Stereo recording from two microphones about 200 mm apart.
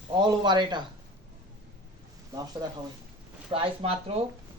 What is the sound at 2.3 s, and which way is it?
A man's voice, 20° right (ahead or behind).